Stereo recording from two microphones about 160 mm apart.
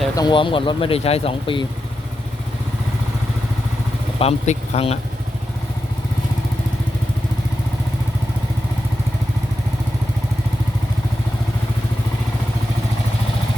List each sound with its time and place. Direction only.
0.2 s speech: 30° left (ahead or behind)
4.2 s speech: 40° left (ahead or behind)